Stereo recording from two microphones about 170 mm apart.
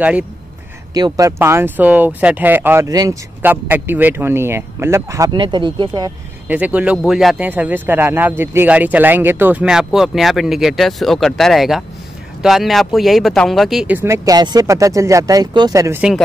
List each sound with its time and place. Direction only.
0.9 s speech: 20° right (ahead or behind)
6.4 s speech: 10° right (ahead or behind)